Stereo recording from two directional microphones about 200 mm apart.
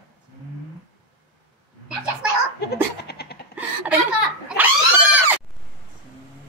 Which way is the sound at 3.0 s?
55° left (ahead or behind).